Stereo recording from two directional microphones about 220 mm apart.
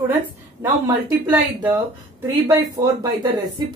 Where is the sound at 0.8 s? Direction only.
10° right (ahead or behind).